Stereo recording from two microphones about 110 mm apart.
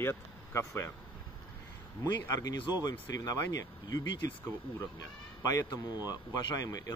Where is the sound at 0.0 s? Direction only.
20° left (ahead or behind).